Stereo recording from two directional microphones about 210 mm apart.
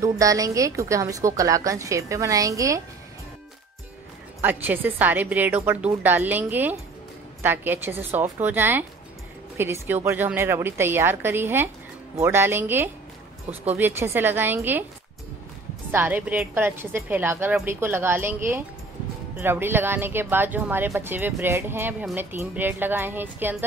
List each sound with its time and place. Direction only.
0.0 s speech: 15° right (ahead or behind)
4.4 s speech: 10° right (ahead or behind)
15.9 s speech: 10° right (ahead or behind)